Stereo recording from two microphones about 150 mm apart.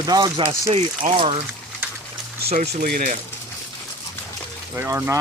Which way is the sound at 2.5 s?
55° right (ahead or behind).